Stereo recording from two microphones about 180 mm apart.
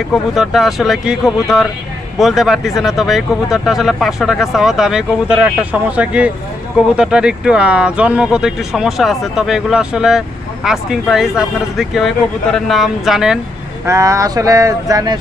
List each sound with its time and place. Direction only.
0.1 s speech: centre (ahead or behind)
13.8 s speech: 15° right (ahead or behind)